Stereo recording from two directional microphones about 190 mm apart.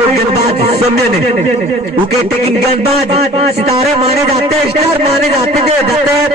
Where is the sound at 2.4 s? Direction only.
35° right (ahead or behind).